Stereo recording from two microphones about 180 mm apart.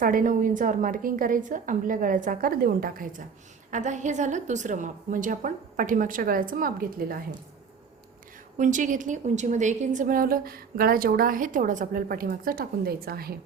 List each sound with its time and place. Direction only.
0.0 s a woman's voice: 50° right (ahead or behind)
8.5 s a woman's voice: 45° right (ahead or behind)